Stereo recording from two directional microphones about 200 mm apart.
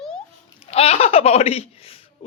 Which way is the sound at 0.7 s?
30° left (ahead or behind).